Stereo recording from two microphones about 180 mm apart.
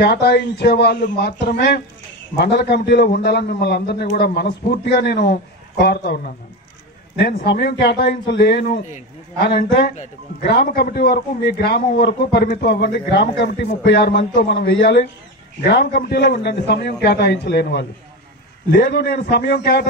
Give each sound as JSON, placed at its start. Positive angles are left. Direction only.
{"t": 0.0, "sound": "a man's voice", "side_deg": 65}